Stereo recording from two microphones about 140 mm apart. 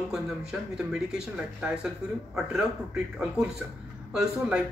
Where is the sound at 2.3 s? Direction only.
5° right (ahead or behind).